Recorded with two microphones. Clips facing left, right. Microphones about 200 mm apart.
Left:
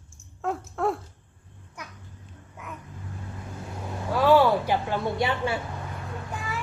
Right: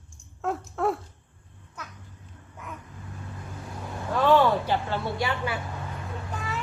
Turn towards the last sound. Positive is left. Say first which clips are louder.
# even
turn(degrees=10)  # may be behind; listen again after turning